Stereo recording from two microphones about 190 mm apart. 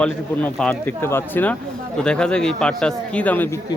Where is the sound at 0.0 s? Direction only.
5° left (ahead or behind).